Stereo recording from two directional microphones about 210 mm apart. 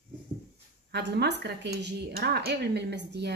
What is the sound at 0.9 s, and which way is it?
Speech, 55° right (ahead or behind).